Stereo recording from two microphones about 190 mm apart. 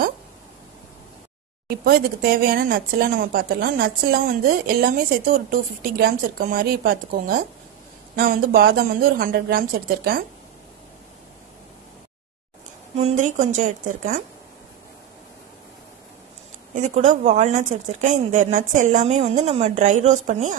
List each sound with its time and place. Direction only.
1.7 s speech: 55° right (ahead or behind)
12.9 s speech: 35° right (ahead or behind)
16.7 s speech: 35° right (ahead or behind)